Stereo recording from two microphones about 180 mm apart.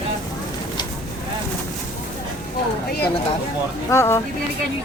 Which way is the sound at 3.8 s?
15° left (ahead or behind).